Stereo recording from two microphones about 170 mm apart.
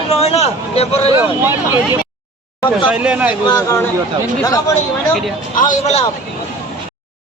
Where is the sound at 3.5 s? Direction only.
20° left (ahead or behind).